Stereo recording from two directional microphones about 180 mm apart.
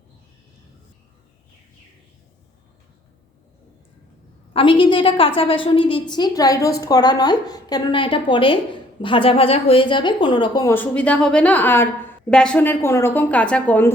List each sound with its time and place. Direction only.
4.5 s a woman's voice: 30° left (ahead or behind); by 13.9 s 10° left (ahead or behind)